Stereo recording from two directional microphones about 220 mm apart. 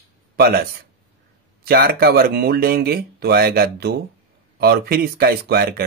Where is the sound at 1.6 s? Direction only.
45° right (ahead or behind).